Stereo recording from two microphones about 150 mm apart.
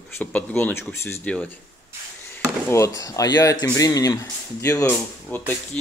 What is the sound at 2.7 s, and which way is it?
Speech, 20° left (ahead or behind).